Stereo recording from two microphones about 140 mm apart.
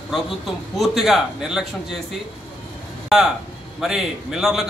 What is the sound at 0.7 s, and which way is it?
Speech, centre (ahead or behind).